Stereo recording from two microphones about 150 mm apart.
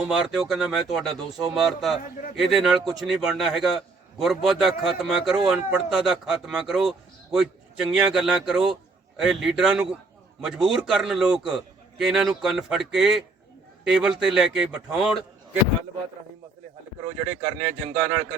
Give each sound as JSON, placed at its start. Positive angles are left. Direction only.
{"t": 0.0, "sound": "a man's voice", "side_deg": -5}
{"t": 17.2, "sound": "speech", "side_deg": -15}